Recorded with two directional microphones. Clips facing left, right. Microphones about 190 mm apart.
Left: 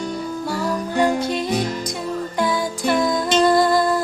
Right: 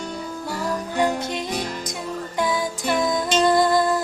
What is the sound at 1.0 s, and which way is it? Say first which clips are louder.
Music: left 4 dB; 20° right (ahead or behind).